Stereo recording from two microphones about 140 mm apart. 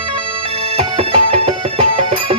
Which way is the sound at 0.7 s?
50° right (ahead or behind).